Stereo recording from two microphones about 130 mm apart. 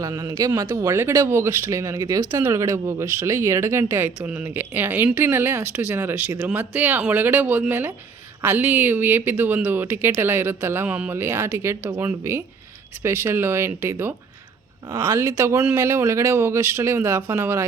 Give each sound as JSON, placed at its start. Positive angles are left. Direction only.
{"t": 0.0, "sound": "speech", "side_deg": -30}